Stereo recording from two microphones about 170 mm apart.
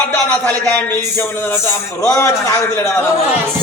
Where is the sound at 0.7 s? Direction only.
10° left (ahead or behind).